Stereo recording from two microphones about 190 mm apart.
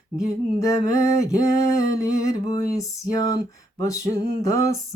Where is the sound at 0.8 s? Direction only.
20° left (ahead or behind).